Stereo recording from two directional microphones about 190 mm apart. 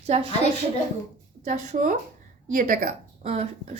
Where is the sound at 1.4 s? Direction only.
40° right (ahead or behind).